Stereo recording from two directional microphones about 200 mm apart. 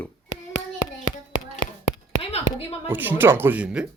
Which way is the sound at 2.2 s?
30° left (ahead or behind).